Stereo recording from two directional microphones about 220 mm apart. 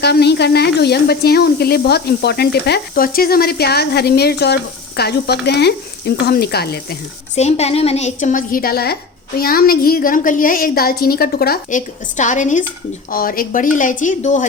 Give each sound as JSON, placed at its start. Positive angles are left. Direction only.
{"t": 0.0, "sound": "speech", "side_deg": 50}
{"t": 7.3, "sound": "a woman's voice", "side_deg": 30}